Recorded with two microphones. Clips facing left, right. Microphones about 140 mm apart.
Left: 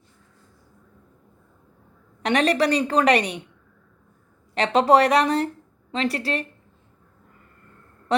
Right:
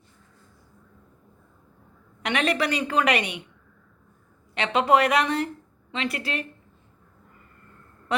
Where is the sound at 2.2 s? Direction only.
35° left (ahead or behind).